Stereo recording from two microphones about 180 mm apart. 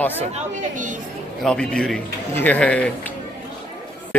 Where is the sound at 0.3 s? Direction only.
40° right (ahead or behind).